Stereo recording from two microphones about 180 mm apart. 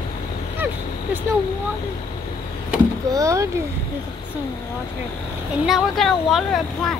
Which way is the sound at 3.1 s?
15° right (ahead or behind).